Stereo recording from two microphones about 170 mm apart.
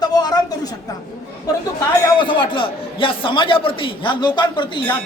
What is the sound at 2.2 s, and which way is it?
A man's voice, 30° left (ahead or behind).